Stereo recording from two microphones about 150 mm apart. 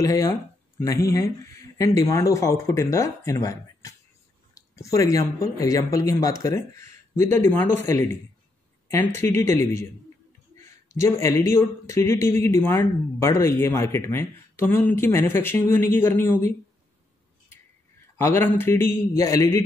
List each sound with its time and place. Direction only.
0.0 s speech: 20° left (ahead or behind)
18.1 s speech: 15° left (ahead or behind)